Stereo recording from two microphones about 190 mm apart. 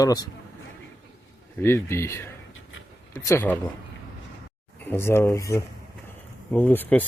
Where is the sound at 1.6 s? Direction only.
15° left (ahead or behind).